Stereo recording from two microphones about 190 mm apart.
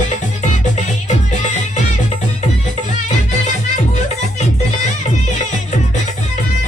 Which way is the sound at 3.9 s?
40° left (ahead or behind).